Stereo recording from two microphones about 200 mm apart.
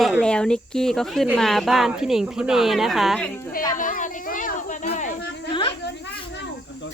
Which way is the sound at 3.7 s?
40° left (ahead or behind).